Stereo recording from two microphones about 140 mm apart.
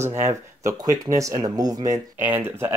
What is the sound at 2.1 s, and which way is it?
Speech, 15° right (ahead or behind).